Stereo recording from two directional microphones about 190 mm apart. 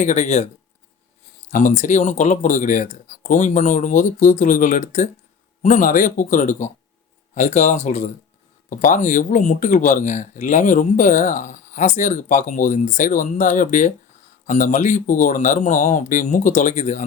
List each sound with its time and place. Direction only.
0.0 s speech: 40° left (ahead or behind)
1.5 s speech: 40° left (ahead or behind)